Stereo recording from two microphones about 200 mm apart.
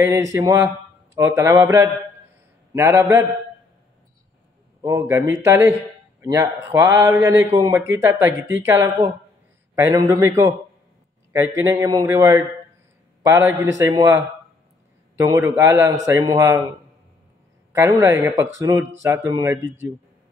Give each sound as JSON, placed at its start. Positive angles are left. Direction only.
{"t": 0.0, "sound": "a man's voice", "side_deg": -15}
{"t": 4.8, "sound": "a man's voice", "side_deg": -15}
{"t": 17.7, "sound": "a man's voice", "side_deg": -15}